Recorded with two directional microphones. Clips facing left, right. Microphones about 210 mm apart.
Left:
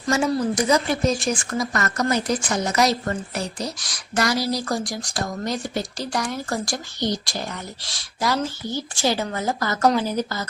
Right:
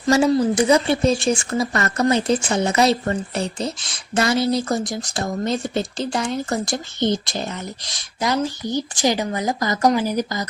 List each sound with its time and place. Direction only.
0.1 s speech: 30° right (ahead or behind); by 10.4 s 15° right (ahead or behind)